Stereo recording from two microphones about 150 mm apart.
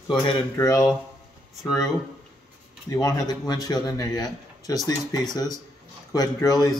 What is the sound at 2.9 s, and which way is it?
Speech, 25° left (ahead or behind).